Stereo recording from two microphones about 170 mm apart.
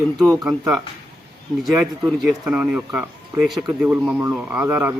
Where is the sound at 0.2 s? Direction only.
Centre (ahead or behind).